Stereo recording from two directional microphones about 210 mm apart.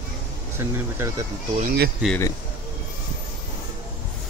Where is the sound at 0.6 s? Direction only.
15° right (ahead or behind).